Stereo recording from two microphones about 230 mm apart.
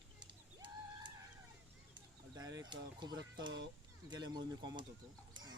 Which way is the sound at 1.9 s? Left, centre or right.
Centre.